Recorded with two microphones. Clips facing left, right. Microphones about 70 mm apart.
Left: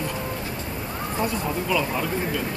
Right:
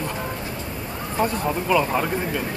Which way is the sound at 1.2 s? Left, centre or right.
Right.